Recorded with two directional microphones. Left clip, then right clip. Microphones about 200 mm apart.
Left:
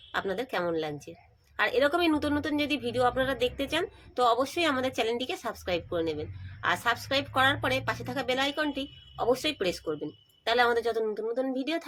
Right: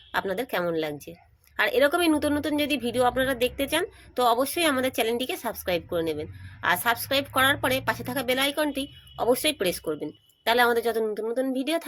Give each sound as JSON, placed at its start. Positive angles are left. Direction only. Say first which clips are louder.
{"t": 0.1, "sound": "a woman's voice", "louder": "right 3 dB", "side_deg": -35}